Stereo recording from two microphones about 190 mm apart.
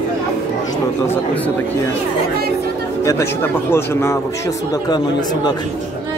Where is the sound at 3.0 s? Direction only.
10° left (ahead or behind).